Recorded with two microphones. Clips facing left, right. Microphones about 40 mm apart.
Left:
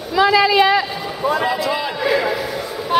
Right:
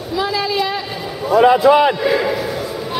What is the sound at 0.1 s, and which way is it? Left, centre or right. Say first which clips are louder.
Speech: left 6 dB; left.